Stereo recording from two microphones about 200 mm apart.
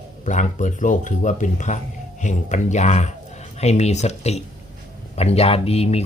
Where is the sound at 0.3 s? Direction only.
40° left (ahead or behind).